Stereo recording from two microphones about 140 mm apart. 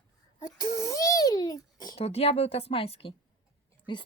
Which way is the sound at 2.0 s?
45° left (ahead or behind).